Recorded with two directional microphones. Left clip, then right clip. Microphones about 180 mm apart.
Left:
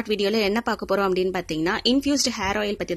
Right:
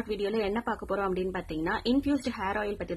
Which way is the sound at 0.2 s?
40° left (ahead or behind).